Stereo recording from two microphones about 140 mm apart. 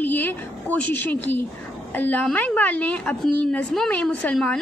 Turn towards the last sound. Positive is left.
turn(degrees=5)  # may be behind; listen again after turning